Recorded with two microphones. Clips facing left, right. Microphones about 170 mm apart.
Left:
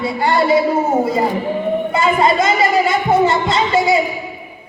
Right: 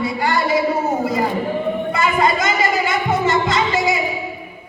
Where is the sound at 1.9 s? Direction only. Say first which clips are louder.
Left 3 dB; 30° left (ahead or behind).